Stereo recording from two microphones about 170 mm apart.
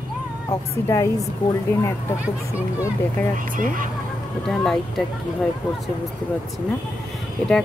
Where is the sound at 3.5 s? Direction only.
55° right (ahead or behind).